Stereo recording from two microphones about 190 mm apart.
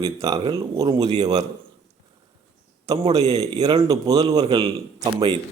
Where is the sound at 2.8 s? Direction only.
20° right (ahead or behind).